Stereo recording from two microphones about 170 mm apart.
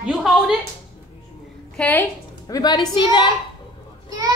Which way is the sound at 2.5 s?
25° left (ahead or behind).